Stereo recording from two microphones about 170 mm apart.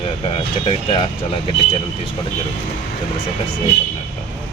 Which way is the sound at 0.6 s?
30° left (ahead or behind).